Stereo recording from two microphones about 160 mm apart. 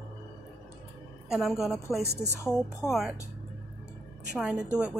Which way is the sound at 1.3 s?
Centre (ahead or behind).